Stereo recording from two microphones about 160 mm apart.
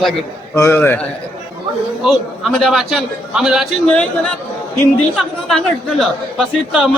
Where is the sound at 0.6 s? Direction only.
15° left (ahead or behind).